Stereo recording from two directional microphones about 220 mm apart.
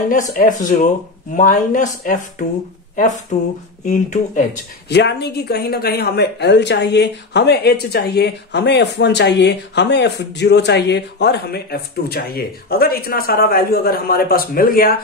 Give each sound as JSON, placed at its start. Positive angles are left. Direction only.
{"t": 0.4, "sound": "speech", "side_deg": 35}
{"t": 3.3, "sound": "a sound", "side_deg": 30}
{"t": 3.8, "sound": "speech", "side_deg": 35}
{"t": 4.8, "sound": "speech", "side_deg": 50}